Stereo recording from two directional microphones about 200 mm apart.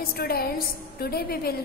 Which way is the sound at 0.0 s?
50° left (ahead or behind).